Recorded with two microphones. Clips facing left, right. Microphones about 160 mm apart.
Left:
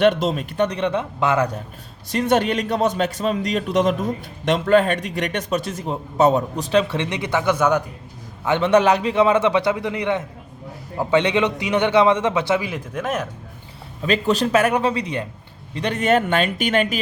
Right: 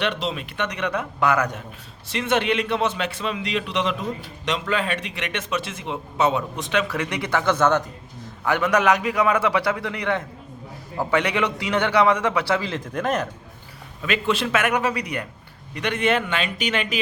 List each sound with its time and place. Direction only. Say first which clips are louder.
0.0 s a man's voice: left 8 dB; 45° left (ahead or behind); by 1.5 s 25° left (ahead or behind)
2.0 s a man's voice: left 3 dB; 40° left (ahead or behind); by 7.9 s 10° left (ahead or behind)
8.4 s a man's voice: left 4 dB; 25° left (ahead or behind); by 13.2 s 5° left (ahead or behind)
14.0 s a man's voice: left 4 dB; 35° left (ahead or behind)
15.7 s a man's voice: left 3 dB; 35° left (ahead or behind)